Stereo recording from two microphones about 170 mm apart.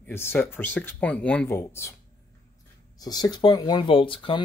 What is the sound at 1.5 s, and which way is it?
Speech, 15° left (ahead or behind).